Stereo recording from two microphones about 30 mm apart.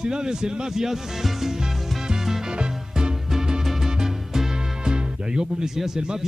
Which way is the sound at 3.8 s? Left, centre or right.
Centre.